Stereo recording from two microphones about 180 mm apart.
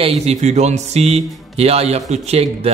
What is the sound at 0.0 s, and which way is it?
Speech, 35° right (ahead or behind).